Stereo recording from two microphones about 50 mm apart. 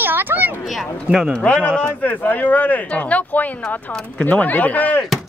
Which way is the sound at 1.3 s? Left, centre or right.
Left.